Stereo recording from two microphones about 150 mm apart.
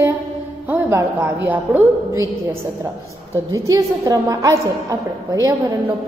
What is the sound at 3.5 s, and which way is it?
A woman's voice, 20° right (ahead or behind).